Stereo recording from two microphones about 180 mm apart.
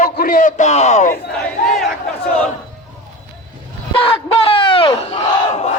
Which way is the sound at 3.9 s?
30° left (ahead or behind).